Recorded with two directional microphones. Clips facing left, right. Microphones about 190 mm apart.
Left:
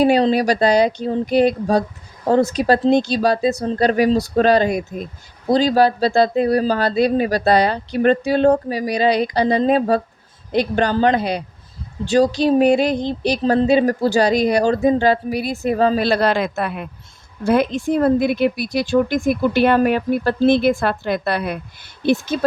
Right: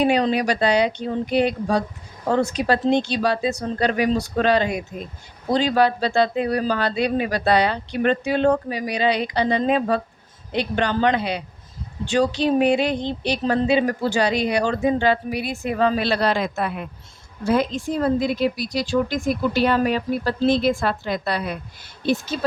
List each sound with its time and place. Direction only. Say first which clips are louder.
0.0 s speech: left 4 dB; 35° left (ahead or behind); by 22.5 s 50° left (ahead or behind)